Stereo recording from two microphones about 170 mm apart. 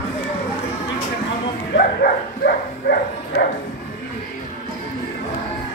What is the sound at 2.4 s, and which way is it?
Dog, 60° left (ahead or behind).